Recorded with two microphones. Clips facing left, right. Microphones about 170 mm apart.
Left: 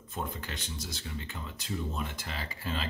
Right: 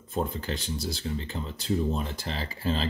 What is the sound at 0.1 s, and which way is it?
Speech, 30° right (ahead or behind).